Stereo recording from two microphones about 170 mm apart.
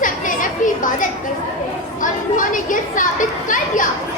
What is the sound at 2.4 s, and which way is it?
Speech, 50° left (ahead or behind).